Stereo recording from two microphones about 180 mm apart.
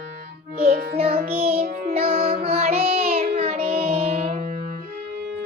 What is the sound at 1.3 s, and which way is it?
Music, 35° right (ahead or behind).